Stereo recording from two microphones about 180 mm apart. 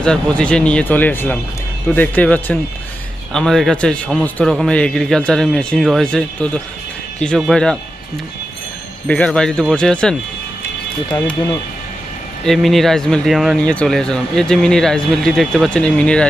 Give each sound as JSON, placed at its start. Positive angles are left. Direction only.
{"t": 0.0, "sound": "speech", "side_deg": 5}
{"t": 9.0, "sound": "speech", "side_deg": 5}
{"t": 11.1, "sound": "speech", "side_deg": 15}
{"t": 12.5, "sound": "speech", "side_deg": 0}